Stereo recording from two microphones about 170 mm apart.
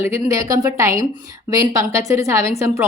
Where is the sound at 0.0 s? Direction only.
15° right (ahead or behind).